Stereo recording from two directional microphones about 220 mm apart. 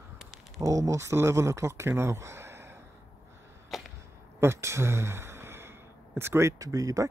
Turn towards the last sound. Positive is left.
turn(degrees=-15)  # may be behind; listen again after turning